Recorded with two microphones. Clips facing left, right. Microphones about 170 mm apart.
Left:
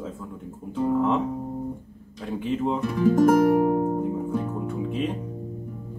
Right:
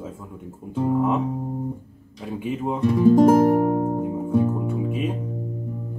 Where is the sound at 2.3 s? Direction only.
10° right (ahead or behind).